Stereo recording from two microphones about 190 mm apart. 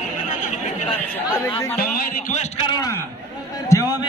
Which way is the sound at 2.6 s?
20° left (ahead or behind).